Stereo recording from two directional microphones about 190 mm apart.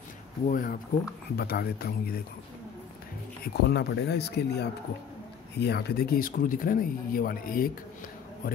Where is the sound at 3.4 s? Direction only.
60° left (ahead or behind).